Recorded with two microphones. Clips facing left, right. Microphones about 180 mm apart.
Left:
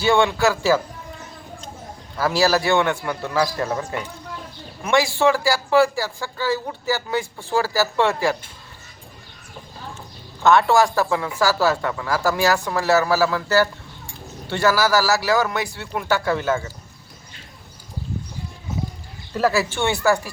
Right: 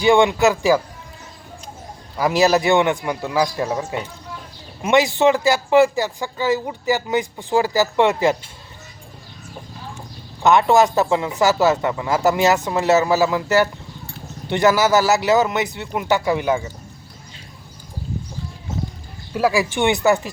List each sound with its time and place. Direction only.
0.0 s speech: 15° right (ahead or behind)
2.1 s a man's voice: 15° right (ahead or behind)
10.4 s a man's voice: 20° right (ahead or behind)
19.3 s speech: 10° right (ahead or behind)